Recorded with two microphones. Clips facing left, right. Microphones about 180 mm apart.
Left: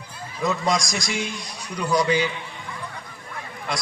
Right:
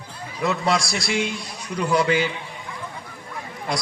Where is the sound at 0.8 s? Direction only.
45° left (ahead or behind).